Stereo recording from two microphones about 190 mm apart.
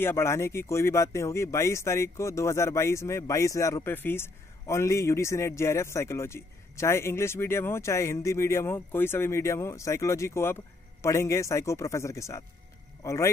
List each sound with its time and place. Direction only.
0.0 s speech: 10° left (ahead or behind)